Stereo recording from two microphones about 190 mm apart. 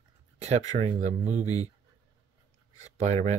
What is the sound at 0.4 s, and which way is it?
Speech, 35° right (ahead or behind).